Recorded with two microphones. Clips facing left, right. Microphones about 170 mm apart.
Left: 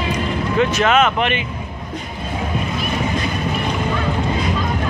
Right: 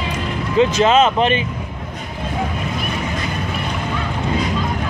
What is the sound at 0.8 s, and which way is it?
Speech, 30° right (ahead or behind).